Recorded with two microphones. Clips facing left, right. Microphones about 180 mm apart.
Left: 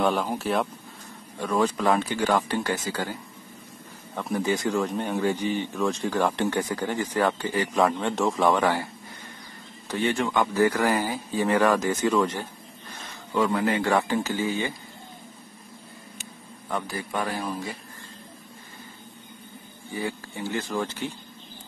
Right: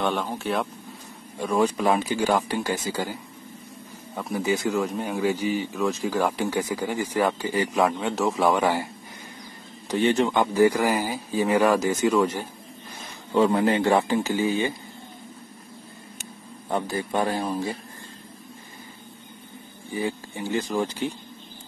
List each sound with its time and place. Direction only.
0.0 s a man's voice: centre (ahead or behind)
1.4 s speech: 10° right (ahead or behind)
7.8 s a man's voice: centre (ahead or behind)
9.8 s speech: 20° right (ahead or behind)
10.5 s speech: 15° right (ahead or behind)
13.3 s speech: 25° right (ahead or behind)
16.6 s speech: 25° right (ahead or behind)
19.9 s speech: 15° right (ahead or behind)